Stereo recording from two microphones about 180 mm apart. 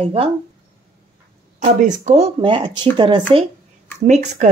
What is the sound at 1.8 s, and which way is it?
Speech, 40° right (ahead or behind).